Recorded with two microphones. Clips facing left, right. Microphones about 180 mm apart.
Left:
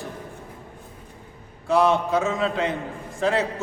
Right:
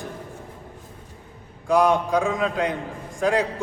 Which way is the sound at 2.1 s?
5° left (ahead or behind).